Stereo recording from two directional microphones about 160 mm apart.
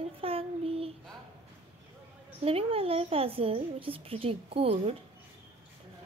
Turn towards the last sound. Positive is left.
turn(degrees=-35)  # may be behind; listen again after turning